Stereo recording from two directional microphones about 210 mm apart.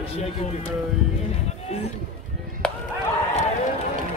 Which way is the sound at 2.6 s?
5° left (ahead or behind).